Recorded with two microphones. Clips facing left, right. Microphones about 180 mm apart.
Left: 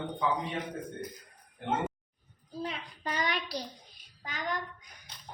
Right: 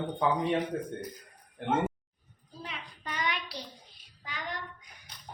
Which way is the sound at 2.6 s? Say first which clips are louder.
Left 3 dB; 35° left (ahead or behind).